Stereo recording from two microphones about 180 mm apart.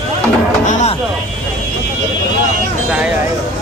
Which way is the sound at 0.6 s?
40° left (ahead or behind).